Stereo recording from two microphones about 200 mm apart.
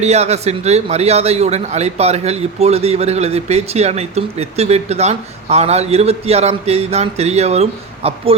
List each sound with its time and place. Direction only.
0.0 s a man's voice: 35° right (ahead or behind)